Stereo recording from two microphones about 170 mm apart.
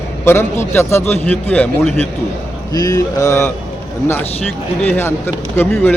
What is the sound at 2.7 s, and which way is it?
Speech, 20° left (ahead or behind).